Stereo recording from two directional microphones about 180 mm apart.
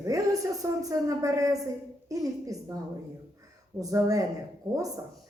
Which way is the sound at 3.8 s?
20° right (ahead or behind).